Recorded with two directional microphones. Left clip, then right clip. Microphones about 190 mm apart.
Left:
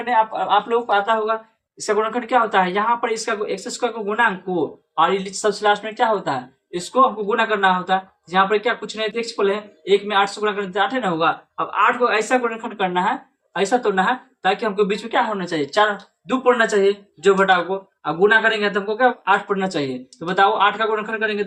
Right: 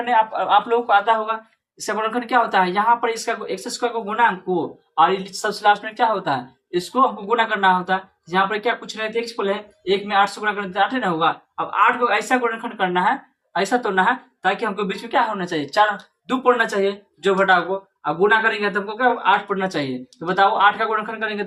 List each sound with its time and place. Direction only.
0.0 s speech: 30° right (ahead or behind)